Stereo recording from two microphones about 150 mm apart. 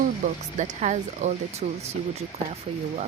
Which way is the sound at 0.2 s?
55° right (ahead or behind).